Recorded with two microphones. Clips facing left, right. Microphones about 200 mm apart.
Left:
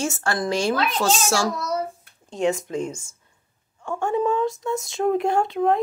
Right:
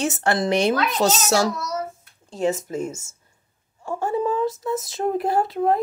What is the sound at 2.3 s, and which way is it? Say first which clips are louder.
Speech: even; 5° right (ahead or behind).